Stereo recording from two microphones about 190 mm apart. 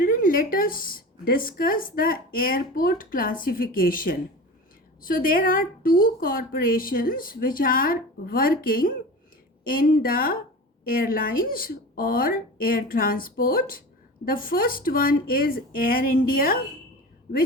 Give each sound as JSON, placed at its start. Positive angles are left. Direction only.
{"t": 0.0, "sound": "speech", "side_deg": 50}